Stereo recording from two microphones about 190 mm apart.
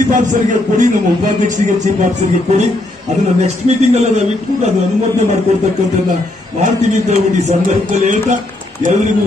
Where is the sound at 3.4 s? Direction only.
35° right (ahead or behind).